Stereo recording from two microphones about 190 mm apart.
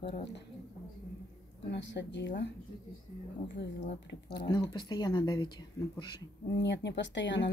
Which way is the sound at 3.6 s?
65° left (ahead or behind).